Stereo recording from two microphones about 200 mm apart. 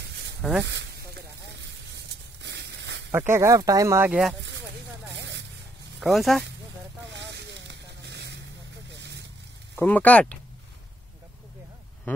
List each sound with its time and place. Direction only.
0.4 s speech: centre (ahead or behind)
0.7 s a sound: 60° right (ahead or behind)
3.1 s speech: 10° right (ahead or behind)
4.4 s a sound: 60° right (ahead or behind)
5.1 s zipper: 60° right (ahead or behind)
5.9 s speech: centre (ahead or behind)
7.1 s a sound: 60° right (ahead or behind)
8.9 s vehicle: 60° right (ahead or behind)
9.8 s speech: 10° left (ahead or behind)